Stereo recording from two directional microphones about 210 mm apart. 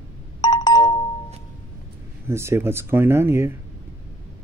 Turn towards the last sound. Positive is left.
turn(degrees=-10)  # may be behind; listen again after turning